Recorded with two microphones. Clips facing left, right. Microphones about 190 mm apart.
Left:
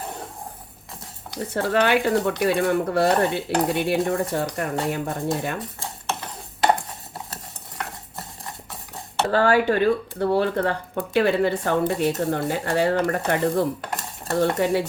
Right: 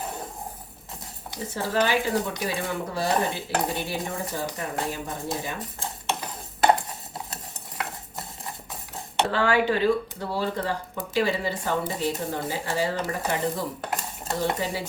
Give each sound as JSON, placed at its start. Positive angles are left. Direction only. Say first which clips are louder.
{"t": 1.5, "sound": "speech", "louder": "left 4 dB", "side_deg": 65}
{"t": 9.3, "sound": "speech", "louder": "left 5 dB", "side_deg": 40}